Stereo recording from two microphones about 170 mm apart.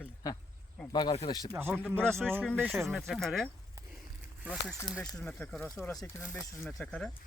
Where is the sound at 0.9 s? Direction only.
25° left (ahead or behind).